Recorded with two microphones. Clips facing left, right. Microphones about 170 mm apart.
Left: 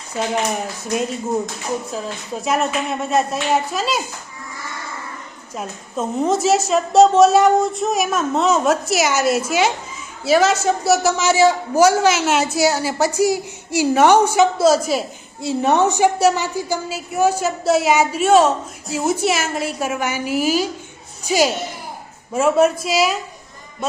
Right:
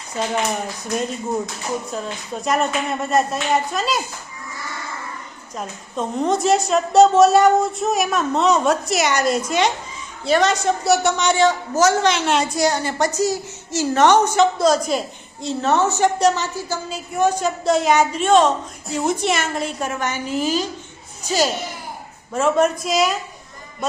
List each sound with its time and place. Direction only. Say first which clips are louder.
0.2 s a woman's voice: left 1 dB; 5° left (ahead or behind)
5.5 s a woman's voice: left 1 dB; 5° left (ahead or behind)